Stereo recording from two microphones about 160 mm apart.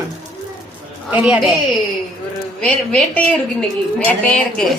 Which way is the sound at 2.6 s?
10° left (ahead or behind).